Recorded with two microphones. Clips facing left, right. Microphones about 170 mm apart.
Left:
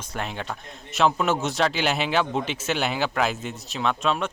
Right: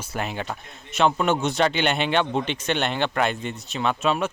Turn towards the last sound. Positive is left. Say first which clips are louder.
# right 2 dB
turn(degrees=-5)  # may be behind; listen again after turning